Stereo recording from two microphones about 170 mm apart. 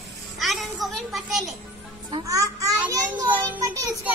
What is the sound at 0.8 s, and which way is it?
Speech, centre (ahead or behind).